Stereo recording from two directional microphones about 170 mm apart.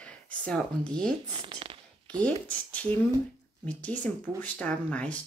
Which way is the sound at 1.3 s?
30° right (ahead or behind).